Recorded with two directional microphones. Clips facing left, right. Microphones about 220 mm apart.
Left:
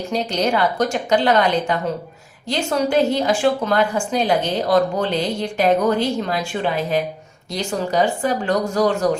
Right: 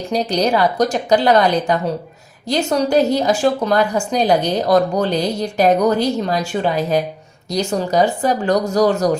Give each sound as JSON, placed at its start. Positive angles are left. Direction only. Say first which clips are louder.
{"t": 0.1, "sound": "speech", "louder": "right 4 dB", "side_deg": -35}